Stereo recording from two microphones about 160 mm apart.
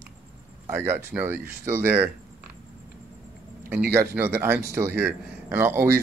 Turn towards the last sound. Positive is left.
turn(degrees=-15)  # may be behind; listen again after turning